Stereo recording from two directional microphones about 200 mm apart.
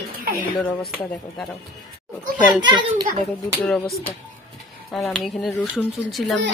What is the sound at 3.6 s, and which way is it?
Speech, centre (ahead or behind).